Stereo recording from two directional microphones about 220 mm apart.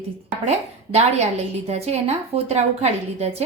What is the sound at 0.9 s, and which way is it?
A woman's voice, 30° right (ahead or behind).